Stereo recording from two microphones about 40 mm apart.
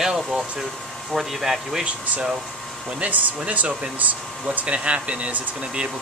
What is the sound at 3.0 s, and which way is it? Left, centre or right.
Speech, right.